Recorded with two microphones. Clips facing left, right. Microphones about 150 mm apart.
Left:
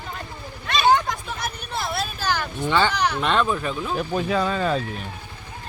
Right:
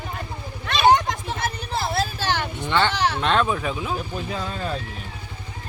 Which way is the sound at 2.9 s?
30° right (ahead or behind).